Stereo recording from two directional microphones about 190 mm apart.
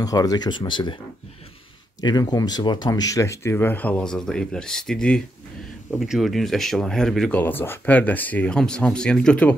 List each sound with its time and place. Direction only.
0.0 s speech: 20° left (ahead or behind)
2.0 s speech: 20° left (ahead or behind); by 9.5 s 5° left (ahead or behind)